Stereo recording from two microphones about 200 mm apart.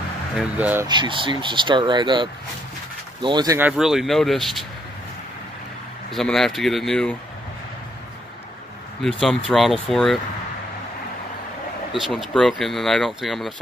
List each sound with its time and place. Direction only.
0.4 s speech: 10° right (ahead or behind)
0.8 s speech: 25° right (ahead or behind)
3.5 s speech: 5° right (ahead or behind)
6.1 s speech: centre (ahead or behind)
9.2 s speech: centre (ahead or behind)
12.1 s speech: centre (ahead or behind)